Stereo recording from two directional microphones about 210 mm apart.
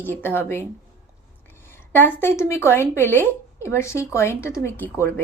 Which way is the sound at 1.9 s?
10° left (ahead or behind).